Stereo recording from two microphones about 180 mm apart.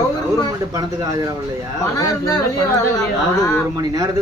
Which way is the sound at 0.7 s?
20° right (ahead or behind).